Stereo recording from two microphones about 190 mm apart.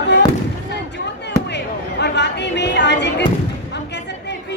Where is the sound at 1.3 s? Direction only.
65° left (ahead or behind).